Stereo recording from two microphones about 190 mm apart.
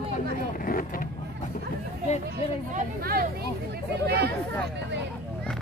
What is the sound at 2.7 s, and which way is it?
Speech, 50° right (ahead or behind).